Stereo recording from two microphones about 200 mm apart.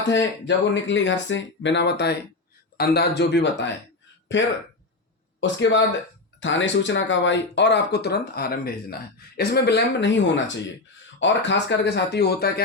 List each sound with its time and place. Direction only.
0.4 s speech: 65° left (ahead or behind)